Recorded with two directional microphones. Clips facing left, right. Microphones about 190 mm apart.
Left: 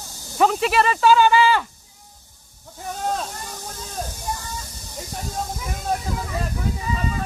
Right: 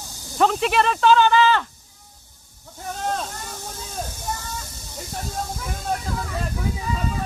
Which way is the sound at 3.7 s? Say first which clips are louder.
Left 1 dB; centre (ahead or behind).